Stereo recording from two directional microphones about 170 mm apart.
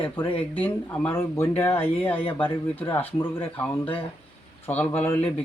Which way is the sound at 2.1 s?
30° left (ahead or behind).